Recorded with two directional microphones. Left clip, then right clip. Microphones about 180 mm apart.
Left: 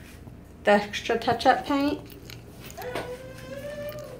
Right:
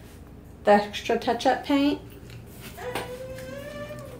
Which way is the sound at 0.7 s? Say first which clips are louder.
Right 2 dB; 10° right (ahead or behind).